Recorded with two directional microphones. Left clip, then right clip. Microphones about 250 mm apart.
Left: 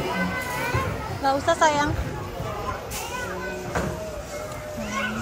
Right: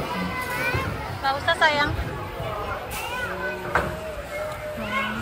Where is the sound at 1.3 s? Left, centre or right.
Centre.